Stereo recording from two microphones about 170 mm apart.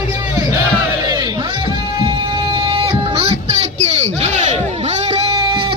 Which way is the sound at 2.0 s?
25° right (ahead or behind).